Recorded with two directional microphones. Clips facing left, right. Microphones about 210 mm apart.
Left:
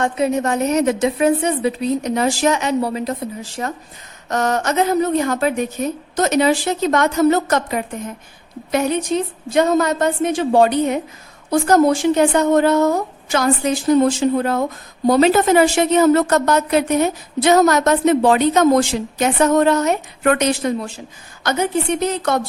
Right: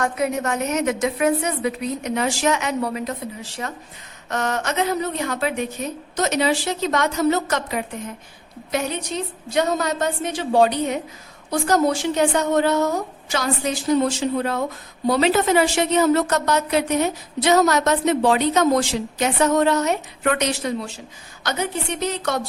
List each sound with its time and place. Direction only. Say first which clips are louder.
0.0 s a woman's voice: left 4 dB; 30° left (ahead or behind)
3.6 s a woman's voice: left 5 dB; 45° left (ahead or behind)
9.5 s a woman's voice: left 5 dB; 50° left (ahead or behind)